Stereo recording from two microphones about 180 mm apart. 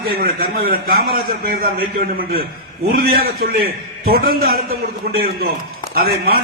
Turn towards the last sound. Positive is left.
turn(degrees=-60)  # may be behind; listen again after turning